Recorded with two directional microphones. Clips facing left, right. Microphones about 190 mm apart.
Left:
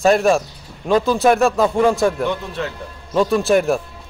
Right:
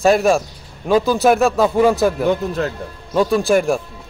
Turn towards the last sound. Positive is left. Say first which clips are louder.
# even
turn(degrees=0)  # may be behind; listen again after turning